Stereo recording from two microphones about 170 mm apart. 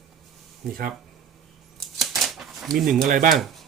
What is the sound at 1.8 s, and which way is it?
Typewriter, centre (ahead or behind).